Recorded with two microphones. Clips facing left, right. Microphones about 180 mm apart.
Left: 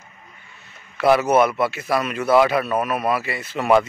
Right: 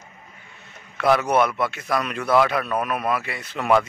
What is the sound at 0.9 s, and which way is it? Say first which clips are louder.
Speech: left 3 dB; 5° left (ahead or behind).